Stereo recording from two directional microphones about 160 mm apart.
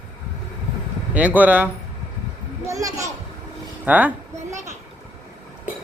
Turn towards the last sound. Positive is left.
turn(degrees=-15)  # may be behind; listen again after turning